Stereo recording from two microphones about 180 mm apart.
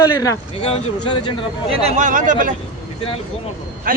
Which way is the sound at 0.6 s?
30° left (ahead or behind).